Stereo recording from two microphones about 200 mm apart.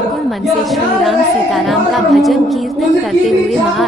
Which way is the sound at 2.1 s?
Centre (ahead or behind).